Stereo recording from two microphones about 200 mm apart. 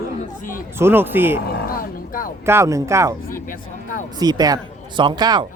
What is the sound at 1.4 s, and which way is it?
Roaring cats, 45° left (ahead or behind).